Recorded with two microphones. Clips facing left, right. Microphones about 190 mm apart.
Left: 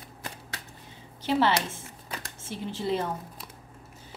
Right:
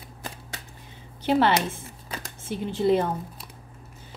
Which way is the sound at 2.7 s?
55° right (ahead or behind).